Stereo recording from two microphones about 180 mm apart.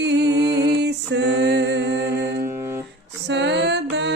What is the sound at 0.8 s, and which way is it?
Music, 70° right (ahead or behind).